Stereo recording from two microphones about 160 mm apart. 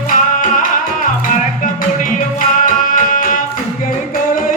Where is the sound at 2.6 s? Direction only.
55° left (ahead or behind).